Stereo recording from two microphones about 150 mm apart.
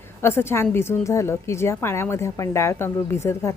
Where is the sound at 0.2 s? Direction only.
15° left (ahead or behind).